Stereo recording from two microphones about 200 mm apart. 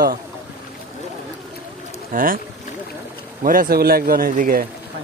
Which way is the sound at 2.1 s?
45° right (ahead or behind).